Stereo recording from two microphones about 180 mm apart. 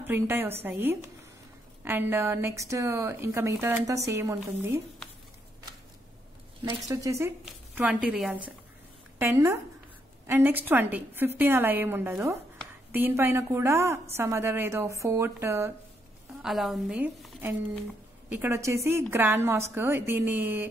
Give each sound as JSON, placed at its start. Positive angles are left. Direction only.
{"t": 0.0, "sound": "a woman's voice", "side_deg": -10}
{"t": 6.6, "sound": "a woman's voice", "side_deg": -15}
{"t": 16.4, "sound": "a woman's voice", "side_deg": 0}
{"t": 18.3, "sound": "a woman's voice", "side_deg": -15}